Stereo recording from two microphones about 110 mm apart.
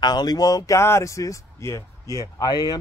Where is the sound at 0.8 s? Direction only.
25° left (ahead or behind).